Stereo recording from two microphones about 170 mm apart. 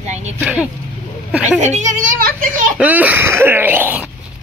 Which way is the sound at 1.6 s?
45° right (ahead or behind).